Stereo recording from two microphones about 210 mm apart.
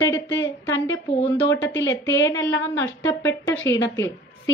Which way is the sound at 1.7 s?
60° left (ahead or behind).